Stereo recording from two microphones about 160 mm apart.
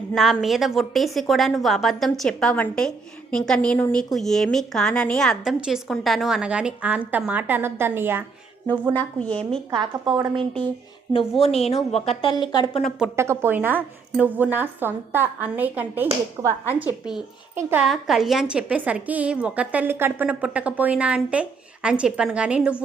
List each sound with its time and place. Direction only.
0.1 s a woman's voice: centre (ahead or behind)
9.2 s a woman's voice: 5° left (ahead or behind)
9.7 s a woman's voice: 30° right (ahead or behind)
11.1 s a woman's voice: 35° left (ahead or behind)
13.1 s a woman's voice: 15° right (ahead or behind)
17.8 s a woman's voice: centre (ahead or behind)